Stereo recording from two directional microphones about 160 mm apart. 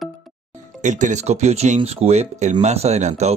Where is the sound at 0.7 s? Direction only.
50° right (ahead or behind).